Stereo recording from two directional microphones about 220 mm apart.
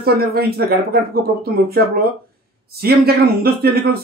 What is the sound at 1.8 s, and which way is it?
A man's voice, 45° right (ahead or behind).